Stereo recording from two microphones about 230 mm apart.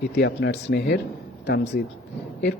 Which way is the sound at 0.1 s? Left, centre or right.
Left.